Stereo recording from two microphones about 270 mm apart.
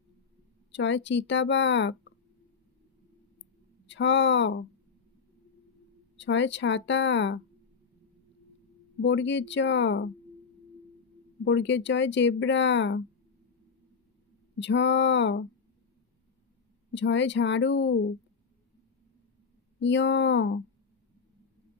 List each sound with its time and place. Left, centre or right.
0.7 s speech: left
3.8 s speech: left
6.1 s speech: left
9.0 s speech: left
11.4 s speech: left
14.6 s speech: left
16.9 s speech: left
19.8 s speech: left